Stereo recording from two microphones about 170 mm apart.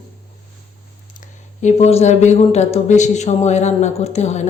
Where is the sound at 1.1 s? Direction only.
45° left (ahead or behind).